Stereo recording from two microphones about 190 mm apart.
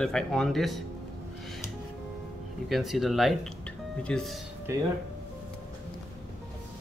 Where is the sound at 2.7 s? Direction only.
Centre (ahead or behind).